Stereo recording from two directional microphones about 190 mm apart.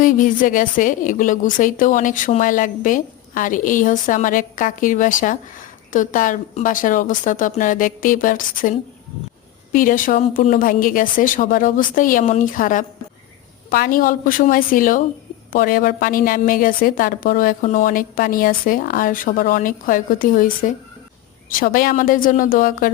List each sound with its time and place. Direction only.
0.0 s a woman's voice: 45° left (ahead or behind)
9.7 s a woman's voice: 45° left (ahead or behind)